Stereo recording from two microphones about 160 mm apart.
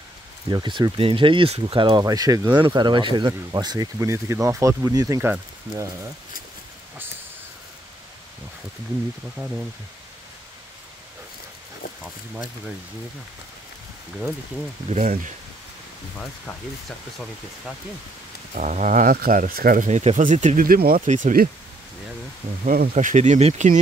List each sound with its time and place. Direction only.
0.5 s speech: 30° right (ahead or behind)
9.4 s speech: 10° right (ahead or behind)
14.9 s speech: 45° right (ahead or behind)
18.5 s speech: 50° right (ahead or behind)
19.9 s speech: 45° right (ahead or behind)
22.7 s speech: 60° right (ahead or behind)